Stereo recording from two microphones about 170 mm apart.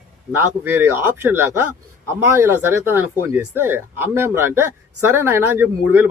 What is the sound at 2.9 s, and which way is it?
Speech, 10° right (ahead or behind).